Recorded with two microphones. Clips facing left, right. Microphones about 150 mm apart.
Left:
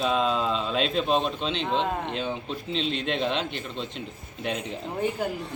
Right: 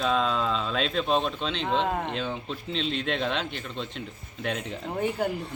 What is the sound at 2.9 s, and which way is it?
Speech, 45° right (ahead or behind).